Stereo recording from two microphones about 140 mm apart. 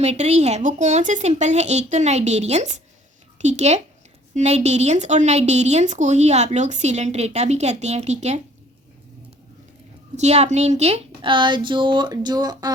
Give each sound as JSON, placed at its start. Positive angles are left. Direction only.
{"t": 0.0, "sound": "speech", "side_deg": -50}
{"t": 10.2, "sound": "a woman's voice", "side_deg": -50}